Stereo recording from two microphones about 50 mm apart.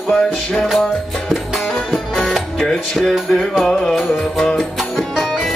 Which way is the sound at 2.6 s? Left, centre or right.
Centre.